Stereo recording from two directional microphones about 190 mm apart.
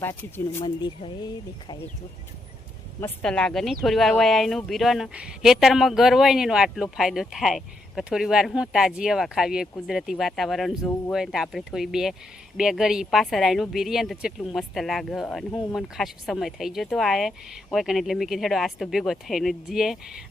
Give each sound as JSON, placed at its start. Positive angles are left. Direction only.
{"t": 0.0, "sound": "speech", "side_deg": 10}
{"t": 0.6, "sound": "speech", "side_deg": 25}
{"t": 3.0, "sound": "speech", "side_deg": 5}